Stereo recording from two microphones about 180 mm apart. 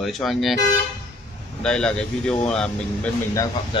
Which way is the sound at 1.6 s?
5° left (ahead or behind).